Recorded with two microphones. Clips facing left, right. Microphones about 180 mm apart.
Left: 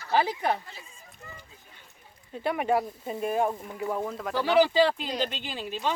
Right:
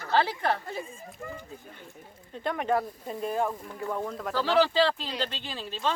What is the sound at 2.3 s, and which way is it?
Speech, 10° left (ahead or behind).